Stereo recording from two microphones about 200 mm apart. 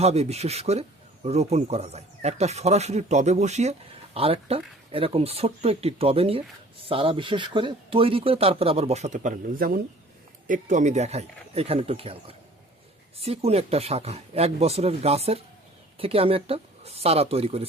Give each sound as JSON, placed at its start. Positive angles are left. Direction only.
{"t": 0.0, "sound": "speech", "side_deg": -30}
{"t": 13.1, "sound": "speech", "side_deg": -30}